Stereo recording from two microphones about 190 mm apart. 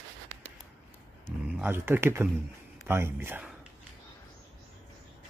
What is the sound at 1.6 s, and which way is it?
Speech, 10° right (ahead or behind).